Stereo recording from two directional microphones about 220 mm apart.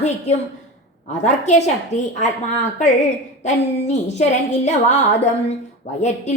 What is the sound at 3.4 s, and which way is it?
A woman's voice, 30° left (ahead or behind).